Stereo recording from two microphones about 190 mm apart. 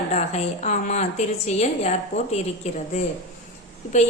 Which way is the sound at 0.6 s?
40° left (ahead or behind).